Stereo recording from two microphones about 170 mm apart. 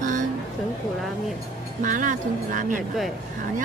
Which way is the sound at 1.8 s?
50° right (ahead or behind).